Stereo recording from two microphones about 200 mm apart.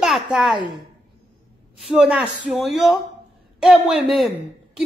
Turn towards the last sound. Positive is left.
turn(degrees=0)  # may be behind; listen again after turning